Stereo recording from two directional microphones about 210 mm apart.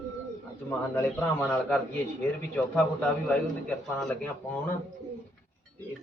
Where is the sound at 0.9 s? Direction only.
5° left (ahead or behind).